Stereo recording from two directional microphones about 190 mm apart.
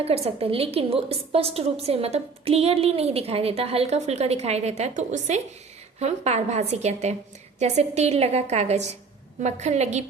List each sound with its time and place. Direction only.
0.0 s a woman's voice: 30° right (ahead or behind)